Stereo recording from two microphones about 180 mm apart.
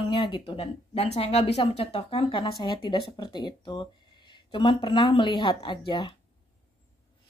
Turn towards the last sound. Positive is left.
turn(degrees=25)  # may be behind; listen again after turning